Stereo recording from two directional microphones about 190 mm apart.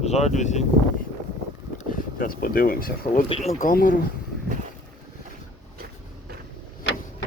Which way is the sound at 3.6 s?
45° left (ahead or behind).